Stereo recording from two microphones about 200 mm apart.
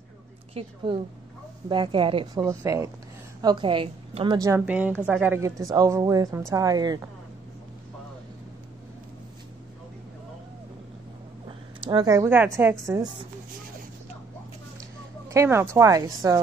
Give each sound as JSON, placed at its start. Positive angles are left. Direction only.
{"t": 0.6, "sound": "a woman's voice", "side_deg": -30}
{"t": 4.6, "sound": "a woman's voice", "side_deg": -5}
{"t": 11.8, "sound": "a woman's voice", "side_deg": -20}
{"t": 14.8, "sound": "speech", "side_deg": -15}